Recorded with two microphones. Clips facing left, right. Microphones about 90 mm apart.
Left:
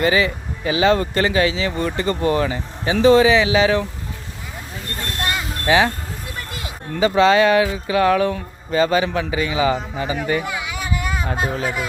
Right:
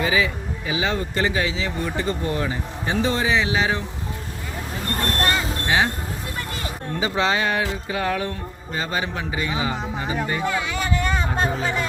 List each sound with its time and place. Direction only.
0.0 s speech: 60° left (ahead or behind); by 3.8 s 90° left
5.2 s vehicle: 5° left (ahead or behind)
5.6 s speech: 90° left
7.0 s speech: 85° left
10.4 s a sound: 10° left (ahead or behind)
11.3 s music: 5° left (ahead or behind)